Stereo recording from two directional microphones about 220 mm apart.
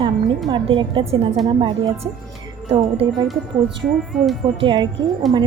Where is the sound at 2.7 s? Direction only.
30° right (ahead or behind).